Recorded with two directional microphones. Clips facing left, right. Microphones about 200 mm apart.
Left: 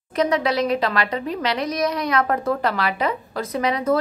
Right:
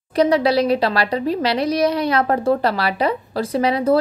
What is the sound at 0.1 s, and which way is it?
A woman's voice, 35° right (ahead or behind).